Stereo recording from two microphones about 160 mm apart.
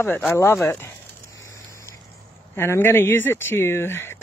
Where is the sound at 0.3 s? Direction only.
15° left (ahead or behind).